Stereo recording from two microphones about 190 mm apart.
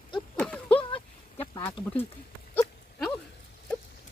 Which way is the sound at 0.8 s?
30° left (ahead or behind).